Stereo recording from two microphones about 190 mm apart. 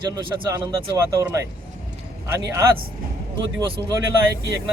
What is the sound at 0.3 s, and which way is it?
Speech, 20° right (ahead or behind).